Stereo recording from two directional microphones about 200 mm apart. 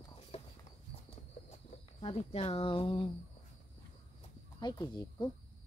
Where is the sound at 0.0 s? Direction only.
25° left (ahead or behind).